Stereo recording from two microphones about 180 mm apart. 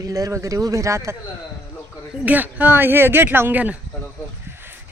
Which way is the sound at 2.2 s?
10° right (ahead or behind).